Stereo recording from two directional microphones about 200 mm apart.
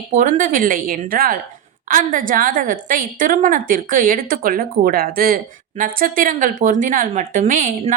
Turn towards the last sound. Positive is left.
turn(degrees=-40)  # may be behind; listen again after turning